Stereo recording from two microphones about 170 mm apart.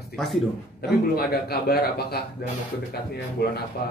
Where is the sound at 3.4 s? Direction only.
70° left (ahead or behind).